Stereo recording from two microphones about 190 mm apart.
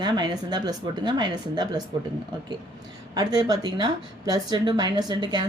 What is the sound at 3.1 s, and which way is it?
Speech, 20° right (ahead or behind).